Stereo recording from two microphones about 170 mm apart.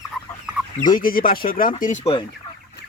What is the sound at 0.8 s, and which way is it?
Speech, 55° left (ahead or behind).